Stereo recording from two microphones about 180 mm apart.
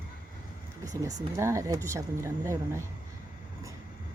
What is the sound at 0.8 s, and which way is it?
Speech, 20° right (ahead or behind).